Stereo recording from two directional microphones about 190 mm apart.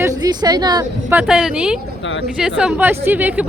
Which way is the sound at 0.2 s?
20° right (ahead or behind).